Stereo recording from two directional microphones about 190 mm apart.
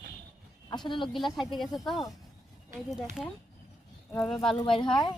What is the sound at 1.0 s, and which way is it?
Speech, centre (ahead or behind).